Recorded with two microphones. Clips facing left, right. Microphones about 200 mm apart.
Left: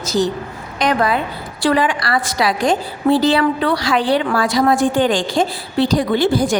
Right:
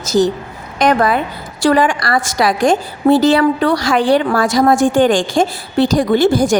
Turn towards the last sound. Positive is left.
turn(degrees=-45)  # may be behind; listen again after turning